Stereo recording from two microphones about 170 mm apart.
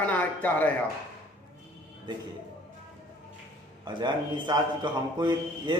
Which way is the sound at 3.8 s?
25° right (ahead or behind).